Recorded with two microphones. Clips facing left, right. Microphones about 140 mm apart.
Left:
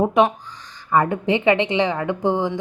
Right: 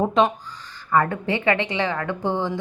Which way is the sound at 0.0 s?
15° left (ahead or behind).